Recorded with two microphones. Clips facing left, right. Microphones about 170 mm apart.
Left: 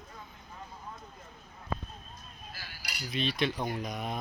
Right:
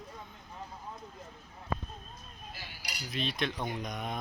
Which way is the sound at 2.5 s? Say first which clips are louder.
Right 1 dB; 20° right (ahead or behind).